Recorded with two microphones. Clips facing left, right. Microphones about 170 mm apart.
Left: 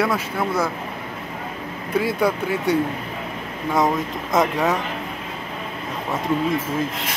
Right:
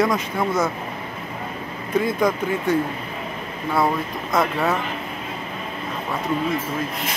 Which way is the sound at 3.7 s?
20° left (ahead or behind).